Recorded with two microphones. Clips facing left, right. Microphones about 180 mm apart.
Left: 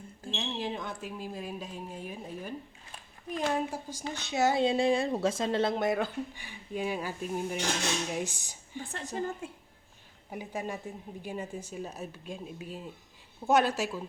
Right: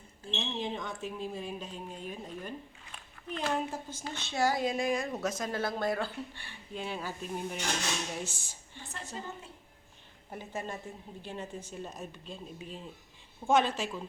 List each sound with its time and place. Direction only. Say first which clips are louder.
0.3 s speech: left 1 dB; 5° left (ahead or behind)
8.8 s a woman's voice: left 5 dB; 50° left (ahead or behind)
10.3 s speech: left 3 dB; 10° left (ahead or behind)